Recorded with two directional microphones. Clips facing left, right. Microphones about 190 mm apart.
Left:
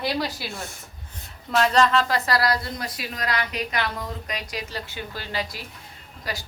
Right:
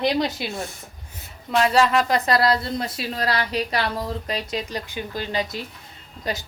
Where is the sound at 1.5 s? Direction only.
5° right (ahead or behind).